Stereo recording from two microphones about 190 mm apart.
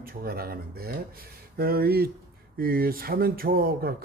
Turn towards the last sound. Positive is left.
turn(degrees=-50)  # may be behind; listen again after turning